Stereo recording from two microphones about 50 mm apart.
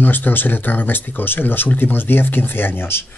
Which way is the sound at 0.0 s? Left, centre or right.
Left.